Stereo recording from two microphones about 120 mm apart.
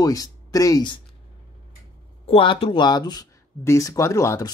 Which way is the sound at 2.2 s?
45° left (ahead or behind).